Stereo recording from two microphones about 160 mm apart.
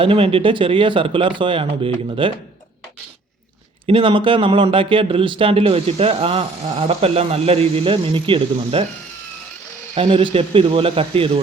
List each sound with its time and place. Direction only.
0.0 s speech: 35° right (ahead or behind)
3.8 s speech: 30° right (ahead or behind)
9.9 s speech: 35° right (ahead or behind)